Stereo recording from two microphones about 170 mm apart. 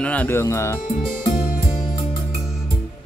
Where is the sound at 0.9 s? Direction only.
50° left (ahead or behind).